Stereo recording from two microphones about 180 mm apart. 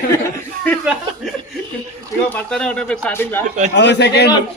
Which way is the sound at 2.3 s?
5° left (ahead or behind).